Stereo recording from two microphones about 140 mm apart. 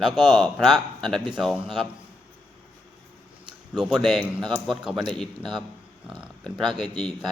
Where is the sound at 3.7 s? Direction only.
5° right (ahead or behind).